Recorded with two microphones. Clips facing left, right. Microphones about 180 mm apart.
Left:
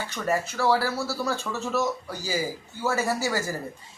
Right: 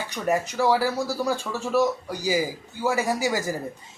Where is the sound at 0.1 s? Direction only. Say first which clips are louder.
Right 3 dB; 15° right (ahead or behind).